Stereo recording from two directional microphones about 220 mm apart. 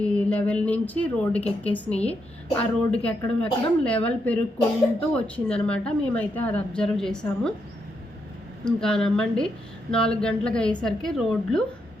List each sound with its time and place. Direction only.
0.0 s a woman's voice: 5° left (ahead or behind)
4.5 s a woman's voice: 25° left (ahead or behind)
5.2 s a woman's voice: 5° left (ahead or behind)
8.6 s a woman's voice: 5° left (ahead or behind)